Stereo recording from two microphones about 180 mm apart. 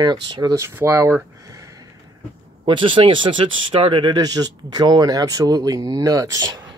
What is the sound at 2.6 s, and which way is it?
Speech, 30° right (ahead or behind).